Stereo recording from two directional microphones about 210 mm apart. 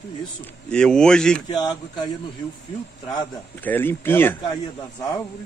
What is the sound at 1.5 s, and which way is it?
A man's voice, 20° left (ahead or behind).